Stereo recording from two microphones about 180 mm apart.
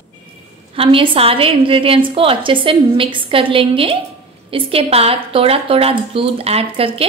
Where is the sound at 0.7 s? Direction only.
30° right (ahead or behind).